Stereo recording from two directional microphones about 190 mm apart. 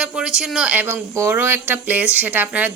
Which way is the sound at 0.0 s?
5° right (ahead or behind).